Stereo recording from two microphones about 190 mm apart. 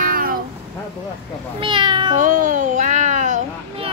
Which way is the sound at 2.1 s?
40° right (ahead or behind).